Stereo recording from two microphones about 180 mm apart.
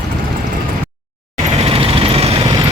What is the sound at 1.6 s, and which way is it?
Vehicle, 30° right (ahead or behind).